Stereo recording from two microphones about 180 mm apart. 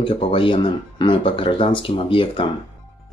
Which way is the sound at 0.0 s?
30° left (ahead or behind).